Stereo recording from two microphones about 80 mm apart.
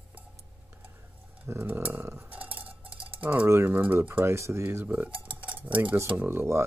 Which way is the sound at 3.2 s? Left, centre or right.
Right.